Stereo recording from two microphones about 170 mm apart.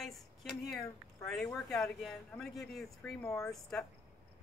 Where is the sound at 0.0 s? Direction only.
Centre (ahead or behind).